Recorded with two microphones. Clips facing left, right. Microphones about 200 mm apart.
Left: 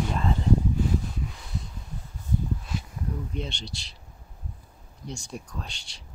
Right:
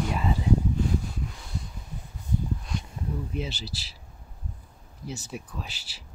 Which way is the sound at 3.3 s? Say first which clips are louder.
Right 1 dB; 5° right (ahead or behind).